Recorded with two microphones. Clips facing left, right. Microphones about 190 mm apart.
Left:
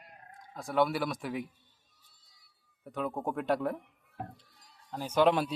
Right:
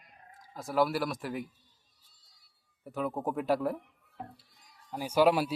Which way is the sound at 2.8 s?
5° right (ahead or behind).